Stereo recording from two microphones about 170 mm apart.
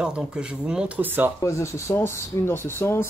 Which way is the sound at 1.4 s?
15° left (ahead or behind).